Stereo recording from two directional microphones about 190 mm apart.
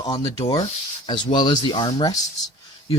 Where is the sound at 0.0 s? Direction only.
20° left (ahead or behind).